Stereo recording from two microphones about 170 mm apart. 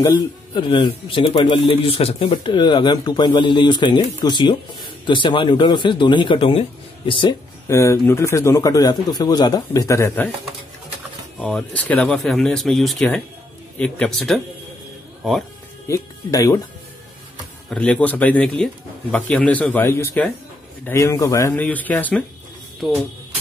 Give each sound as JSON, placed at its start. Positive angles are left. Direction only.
{"t": 0.6, "sound": "speech", "side_deg": 30}
{"t": 7.6, "sound": "speech", "side_deg": 15}
{"t": 11.3, "sound": "speech", "side_deg": 5}
{"t": 15.9, "sound": "speech", "side_deg": 20}
{"t": 17.6, "sound": "speech", "side_deg": 5}
{"t": 22.8, "sound": "speech", "side_deg": -5}